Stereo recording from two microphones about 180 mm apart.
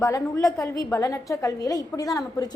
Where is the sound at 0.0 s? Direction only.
20° left (ahead or behind).